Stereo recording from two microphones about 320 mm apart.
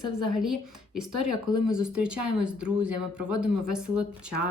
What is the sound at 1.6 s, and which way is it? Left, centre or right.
Speech, centre.